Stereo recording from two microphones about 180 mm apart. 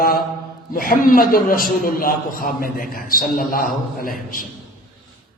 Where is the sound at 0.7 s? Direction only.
50° left (ahead or behind).